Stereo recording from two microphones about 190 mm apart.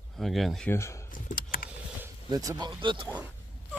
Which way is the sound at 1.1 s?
45° left (ahead or behind).